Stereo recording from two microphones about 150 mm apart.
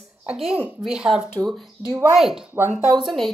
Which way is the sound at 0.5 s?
10° right (ahead or behind).